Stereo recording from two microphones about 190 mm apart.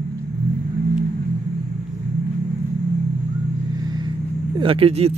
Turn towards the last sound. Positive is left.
turn(degrees=-30)  # may be behind; listen again after turning